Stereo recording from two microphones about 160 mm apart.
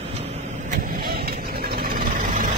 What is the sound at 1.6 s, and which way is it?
Vehicle, 70° right (ahead or behind).